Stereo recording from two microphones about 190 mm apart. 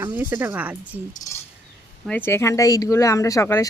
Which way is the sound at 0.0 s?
10° right (ahead or behind).